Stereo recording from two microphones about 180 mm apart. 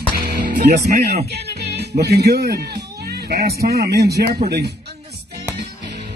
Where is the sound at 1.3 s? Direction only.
65° right (ahead or behind).